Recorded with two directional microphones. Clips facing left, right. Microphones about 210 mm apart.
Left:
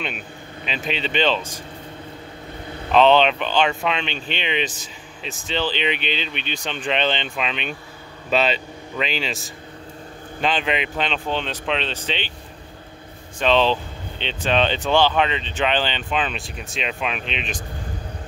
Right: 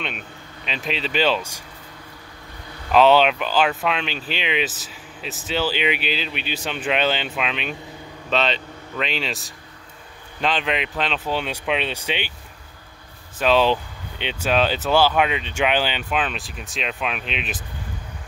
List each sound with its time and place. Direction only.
0.7 s speech: centre (ahead or behind)
2.9 s speech: 5° right (ahead or behind)
13.4 s speech: 5° right (ahead or behind)